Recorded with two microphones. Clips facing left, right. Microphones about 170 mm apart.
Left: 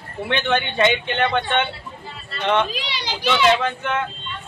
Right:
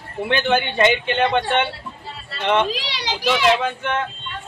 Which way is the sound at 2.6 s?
90° right.